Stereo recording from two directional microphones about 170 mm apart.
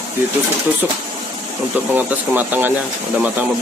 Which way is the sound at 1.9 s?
10° right (ahead or behind).